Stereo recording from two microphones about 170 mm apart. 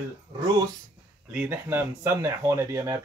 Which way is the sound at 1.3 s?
10° right (ahead or behind).